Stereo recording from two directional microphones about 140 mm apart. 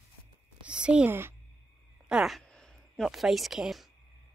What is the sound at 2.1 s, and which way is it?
Speech, 5° right (ahead or behind).